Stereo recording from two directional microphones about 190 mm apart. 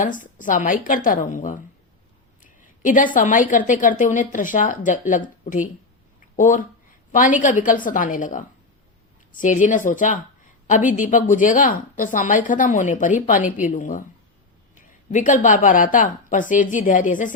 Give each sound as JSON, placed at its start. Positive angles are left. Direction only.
{"t": 0.0, "sound": "a woman's voice", "side_deg": 45}
{"t": 6.3, "sound": "a woman's voice", "side_deg": 40}